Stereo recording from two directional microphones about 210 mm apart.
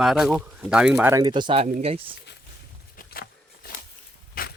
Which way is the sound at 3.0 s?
45° left (ahead or behind).